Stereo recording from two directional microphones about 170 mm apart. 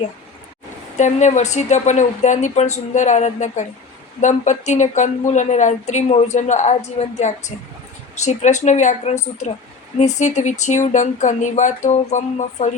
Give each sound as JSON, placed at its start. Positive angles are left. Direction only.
{"t": 0.9, "sound": "speech", "side_deg": 45}